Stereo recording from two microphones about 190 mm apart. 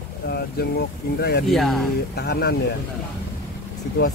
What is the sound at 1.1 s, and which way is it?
Speech, 60° left (ahead or behind).